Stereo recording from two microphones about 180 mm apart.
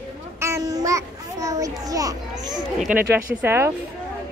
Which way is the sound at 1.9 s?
20° right (ahead or behind).